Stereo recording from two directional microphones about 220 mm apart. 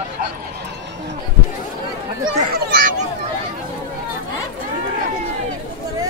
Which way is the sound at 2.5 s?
45° right (ahead or behind).